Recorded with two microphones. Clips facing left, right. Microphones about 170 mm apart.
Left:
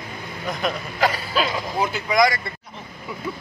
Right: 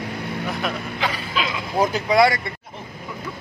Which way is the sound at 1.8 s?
35° right (ahead or behind).